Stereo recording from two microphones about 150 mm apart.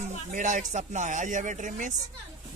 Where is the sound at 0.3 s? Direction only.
55° right (ahead or behind).